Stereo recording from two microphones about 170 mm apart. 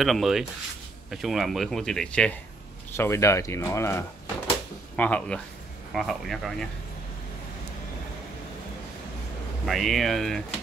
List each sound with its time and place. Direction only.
0.0 s speech: centre (ahead or behind)
9.7 s speech: centre (ahead or behind)